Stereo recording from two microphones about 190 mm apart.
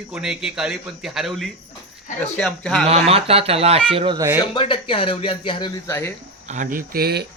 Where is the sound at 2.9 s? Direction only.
30° right (ahead or behind).